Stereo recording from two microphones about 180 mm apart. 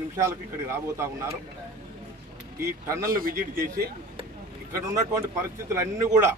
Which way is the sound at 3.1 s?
55° right (ahead or behind).